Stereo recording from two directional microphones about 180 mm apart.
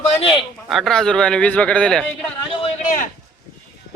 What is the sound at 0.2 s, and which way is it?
Speech, 30° left (ahead or behind).